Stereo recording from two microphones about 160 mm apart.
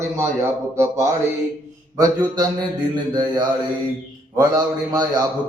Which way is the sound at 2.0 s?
25° right (ahead or behind).